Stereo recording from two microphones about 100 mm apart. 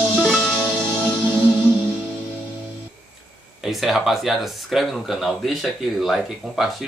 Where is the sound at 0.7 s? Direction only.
5° left (ahead or behind).